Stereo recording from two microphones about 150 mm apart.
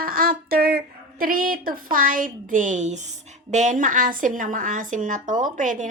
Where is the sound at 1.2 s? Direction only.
70° right (ahead or behind).